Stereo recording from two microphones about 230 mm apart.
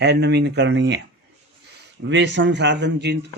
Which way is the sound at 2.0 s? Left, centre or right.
Right.